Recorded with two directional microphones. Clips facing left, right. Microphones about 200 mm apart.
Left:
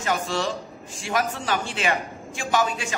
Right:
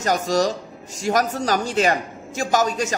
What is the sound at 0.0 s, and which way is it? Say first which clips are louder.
Speech: right 6 dB; 40° right (ahead or behind).